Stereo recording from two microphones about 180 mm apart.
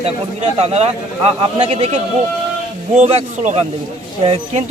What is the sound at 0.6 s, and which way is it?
Speech, 35° right (ahead or behind).